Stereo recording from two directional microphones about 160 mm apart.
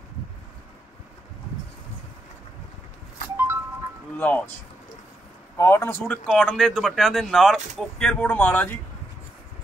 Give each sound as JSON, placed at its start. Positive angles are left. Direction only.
{"t": 4.2, "sound": "speech", "side_deg": 10}
{"t": 5.6, "sound": "speech", "side_deg": 15}
{"t": 6.2, "sound": "speech", "side_deg": 5}